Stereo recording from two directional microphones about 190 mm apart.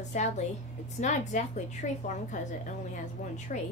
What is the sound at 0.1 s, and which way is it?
A woman's voice, 40° left (ahead or behind).